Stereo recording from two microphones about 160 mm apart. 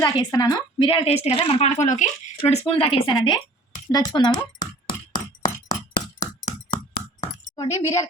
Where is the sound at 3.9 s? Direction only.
25° left (ahead or behind).